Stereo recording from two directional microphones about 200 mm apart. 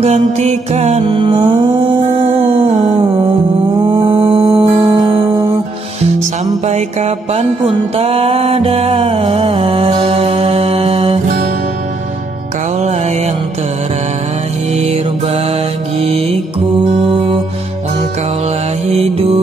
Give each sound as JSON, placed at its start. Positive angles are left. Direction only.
{"t": 0.0, "sound": "music", "side_deg": -35}
{"t": 1.0, "sound": "music", "side_deg": -20}
{"t": 3.8, "sound": "music", "side_deg": -20}
{"t": 6.6, "sound": "music", "side_deg": -35}
{"t": 14.7, "sound": "mantra", "side_deg": -30}
{"t": 16.0, "sound": "music", "side_deg": -30}
{"t": 18.9, "sound": "mantra", "side_deg": -35}